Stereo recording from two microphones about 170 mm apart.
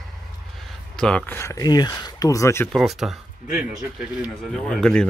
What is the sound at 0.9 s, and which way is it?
Speech, 5° left (ahead or behind).